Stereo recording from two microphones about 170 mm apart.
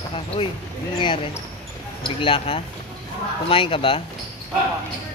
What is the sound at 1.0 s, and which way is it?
Speech, 30° left (ahead or behind).